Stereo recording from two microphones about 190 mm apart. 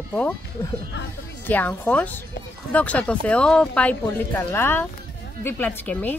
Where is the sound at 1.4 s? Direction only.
10° left (ahead or behind).